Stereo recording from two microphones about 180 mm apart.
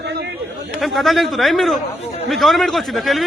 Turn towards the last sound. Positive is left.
turn(degrees=0)  # may be behind; listen again after turning